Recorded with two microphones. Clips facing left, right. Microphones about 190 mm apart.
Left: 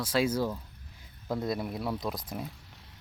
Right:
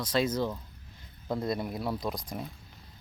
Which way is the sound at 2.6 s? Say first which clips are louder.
Right 1 dB; 75° left (ahead or behind).